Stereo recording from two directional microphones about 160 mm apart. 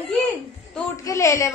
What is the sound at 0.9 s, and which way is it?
Speech, 20° left (ahead or behind).